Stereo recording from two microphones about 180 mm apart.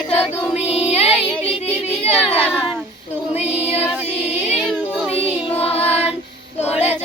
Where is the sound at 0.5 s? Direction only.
35° left (ahead or behind).